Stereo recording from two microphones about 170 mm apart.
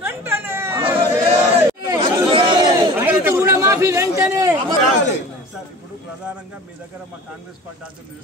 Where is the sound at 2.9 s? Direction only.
10° right (ahead or behind).